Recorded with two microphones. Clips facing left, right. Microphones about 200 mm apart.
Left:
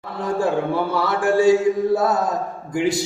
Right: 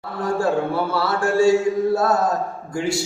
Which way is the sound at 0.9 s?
15° left (ahead or behind).